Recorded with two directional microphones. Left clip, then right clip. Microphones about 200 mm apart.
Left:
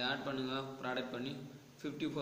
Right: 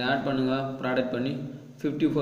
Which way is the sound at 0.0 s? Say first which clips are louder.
Right 12 dB; 35° right (ahead or behind).